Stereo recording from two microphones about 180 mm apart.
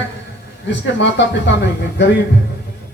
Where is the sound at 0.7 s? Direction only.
80° left.